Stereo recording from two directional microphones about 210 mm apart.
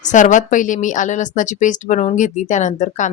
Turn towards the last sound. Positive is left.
turn(degrees=35)  # may be behind; listen again after turning